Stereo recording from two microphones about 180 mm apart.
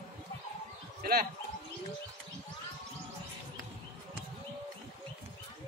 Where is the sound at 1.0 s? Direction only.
55° right (ahead or behind).